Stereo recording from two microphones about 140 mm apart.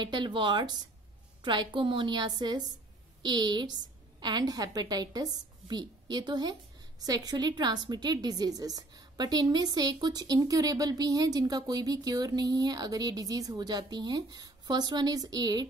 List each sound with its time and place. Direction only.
0.0 s a woman's voice: 35° right (ahead or behind)